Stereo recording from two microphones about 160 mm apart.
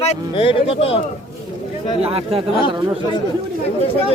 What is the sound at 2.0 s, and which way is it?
Speech, 35° right (ahead or behind).